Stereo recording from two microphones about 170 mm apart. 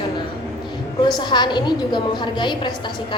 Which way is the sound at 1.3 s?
25° left (ahead or behind).